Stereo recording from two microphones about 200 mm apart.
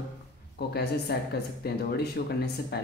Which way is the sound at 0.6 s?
55° left (ahead or behind).